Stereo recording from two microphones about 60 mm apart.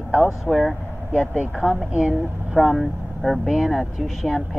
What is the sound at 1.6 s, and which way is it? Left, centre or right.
Speech, centre.